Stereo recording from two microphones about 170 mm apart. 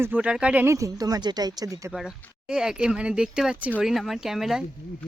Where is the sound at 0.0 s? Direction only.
10° right (ahead or behind).